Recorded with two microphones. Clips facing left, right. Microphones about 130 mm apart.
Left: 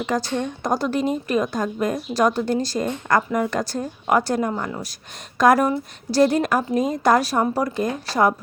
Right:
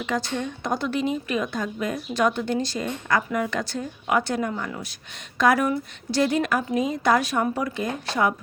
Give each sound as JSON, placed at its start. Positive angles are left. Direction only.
{"t": 0.0, "sound": "a woman's voice", "side_deg": 40}